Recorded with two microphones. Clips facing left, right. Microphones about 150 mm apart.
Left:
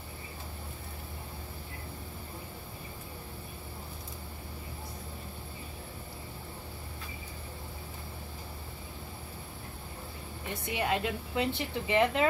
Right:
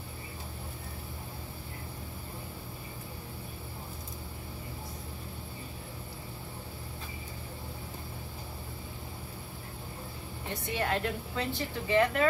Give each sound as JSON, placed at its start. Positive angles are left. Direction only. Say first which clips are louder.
{"t": 10.7, "sound": "a woman's voice", "louder": "even", "side_deg": 15}